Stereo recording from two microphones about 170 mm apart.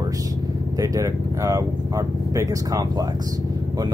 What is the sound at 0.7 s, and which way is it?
Speech, 20° right (ahead or behind).